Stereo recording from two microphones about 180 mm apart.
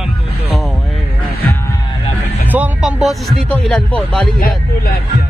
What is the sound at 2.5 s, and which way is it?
Speech, 5° right (ahead or behind).